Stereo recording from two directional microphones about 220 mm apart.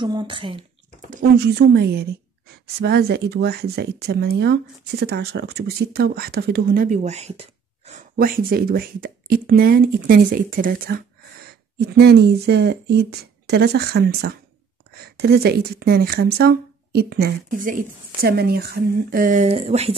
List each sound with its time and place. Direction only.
0.0 s speech: 20° right (ahead or behind)
1.2 s speech: 50° right (ahead or behind); by 8.0 s 30° right (ahead or behind)
8.2 s speech: 40° right (ahead or behind)
12.0 s speech: 50° right (ahead or behind); by 20.0 s 30° right (ahead or behind)